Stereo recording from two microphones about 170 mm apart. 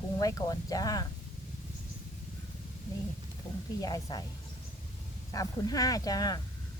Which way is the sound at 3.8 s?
25° left (ahead or behind).